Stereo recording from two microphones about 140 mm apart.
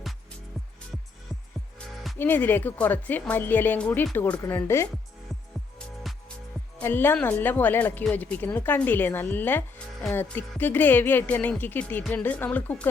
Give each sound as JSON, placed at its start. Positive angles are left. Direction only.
{"t": 2.1, "sound": "speech", "side_deg": 15}
{"t": 6.7, "sound": "speech", "side_deg": 15}